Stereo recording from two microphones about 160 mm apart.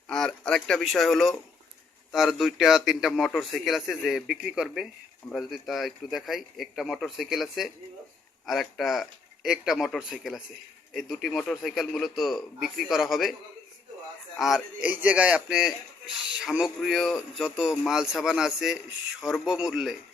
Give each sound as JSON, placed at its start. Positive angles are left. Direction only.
{"t": 0.1, "sound": "a man's voice", "side_deg": 5}
{"t": 14.3, "sound": "a man's voice", "side_deg": 0}